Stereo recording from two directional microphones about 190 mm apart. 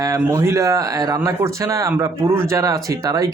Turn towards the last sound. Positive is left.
turn(degrees=-20)  # may be behind; listen again after turning